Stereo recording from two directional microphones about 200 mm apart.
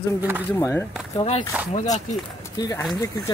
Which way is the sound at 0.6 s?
15° left (ahead or behind).